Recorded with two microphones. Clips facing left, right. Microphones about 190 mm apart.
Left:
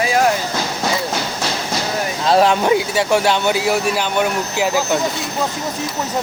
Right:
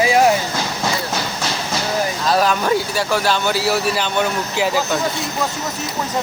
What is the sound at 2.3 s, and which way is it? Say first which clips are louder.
Speech: left 4 dB; 25° left (ahead or behind).